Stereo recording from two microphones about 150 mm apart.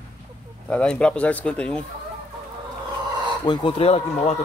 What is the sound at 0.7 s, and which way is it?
Speech, 5° left (ahead or behind).